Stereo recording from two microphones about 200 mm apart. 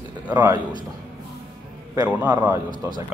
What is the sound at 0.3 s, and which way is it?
Speech, 10° right (ahead or behind).